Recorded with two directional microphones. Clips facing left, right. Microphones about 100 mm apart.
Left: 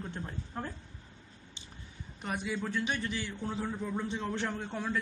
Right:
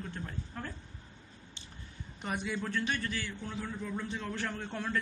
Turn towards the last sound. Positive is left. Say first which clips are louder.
# left 2 dB
turn(degrees=10)  # may be behind; listen again after turning